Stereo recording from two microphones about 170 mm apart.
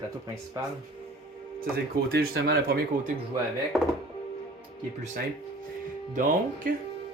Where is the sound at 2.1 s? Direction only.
65° right (ahead or behind).